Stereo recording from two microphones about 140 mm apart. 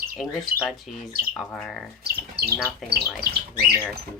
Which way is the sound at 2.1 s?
90° right.